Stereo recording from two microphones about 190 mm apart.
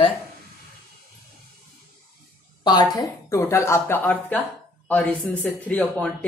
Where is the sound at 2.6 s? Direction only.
20° left (ahead or behind).